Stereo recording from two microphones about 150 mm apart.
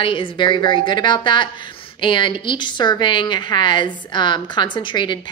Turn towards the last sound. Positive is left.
turn(degrees=30)  # may be behind; listen again after turning